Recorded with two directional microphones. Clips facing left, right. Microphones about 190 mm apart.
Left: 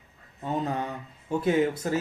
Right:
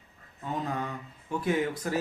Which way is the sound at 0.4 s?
25° left (ahead or behind).